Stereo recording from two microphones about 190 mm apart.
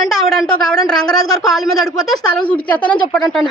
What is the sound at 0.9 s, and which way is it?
Speech, 5° left (ahead or behind).